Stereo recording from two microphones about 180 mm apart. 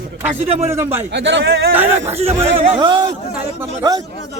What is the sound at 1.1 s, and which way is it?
Speech, 85° right.